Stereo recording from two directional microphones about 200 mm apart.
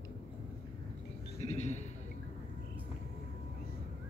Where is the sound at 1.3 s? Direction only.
35° left (ahead or behind).